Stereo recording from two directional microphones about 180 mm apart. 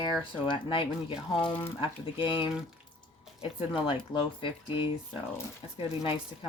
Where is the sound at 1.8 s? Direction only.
30° left (ahead or behind).